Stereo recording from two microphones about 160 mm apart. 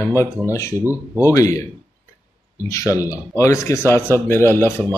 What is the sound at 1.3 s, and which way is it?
Speech, 20° left (ahead or behind).